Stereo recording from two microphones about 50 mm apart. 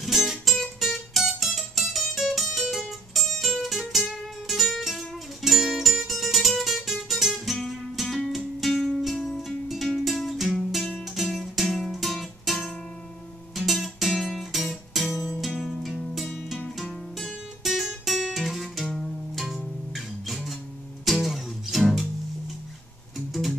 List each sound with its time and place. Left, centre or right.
0.0 s music: centre
16.7 s guitar: centre
18.9 s music: centre
23.1 s music: centre